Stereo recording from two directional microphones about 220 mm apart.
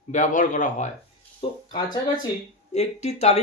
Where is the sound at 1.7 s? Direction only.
20° left (ahead or behind).